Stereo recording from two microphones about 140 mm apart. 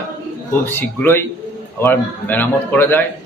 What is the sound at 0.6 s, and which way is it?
Speech, 15° left (ahead or behind).